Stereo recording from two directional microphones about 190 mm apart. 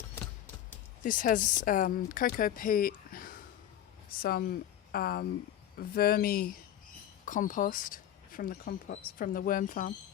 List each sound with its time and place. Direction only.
1.0 s speech: 45° left (ahead or behind)